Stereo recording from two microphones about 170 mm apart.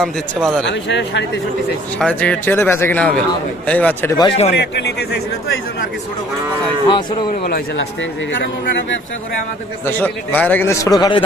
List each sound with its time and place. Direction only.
0.0 s speech: centre (ahead or behind)
0.7 s a man's voice: 90° left
2.0 s a man's voice: 5° left (ahead or behind)
4.2 s speech: 35° left (ahead or behind)
4.5 s a man's voice: 80° left
7.4 s speech: 65° left (ahead or behind)
8.3 s a man's voice: 90° left
9.8 s a man's voice: 10° left (ahead or behind)